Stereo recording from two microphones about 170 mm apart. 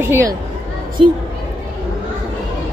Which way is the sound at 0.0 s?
15° right (ahead or behind).